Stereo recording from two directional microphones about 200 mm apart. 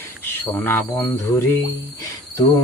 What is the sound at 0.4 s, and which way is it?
Speech, 10° left (ahead or behind).